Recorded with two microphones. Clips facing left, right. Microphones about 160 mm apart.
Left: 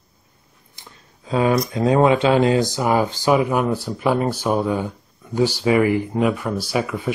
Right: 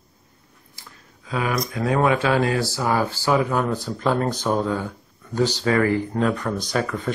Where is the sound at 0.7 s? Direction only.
25° left (ahead or behind).